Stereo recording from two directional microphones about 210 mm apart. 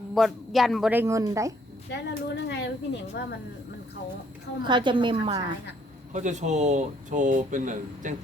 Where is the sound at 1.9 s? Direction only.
55° left (ahead or behind).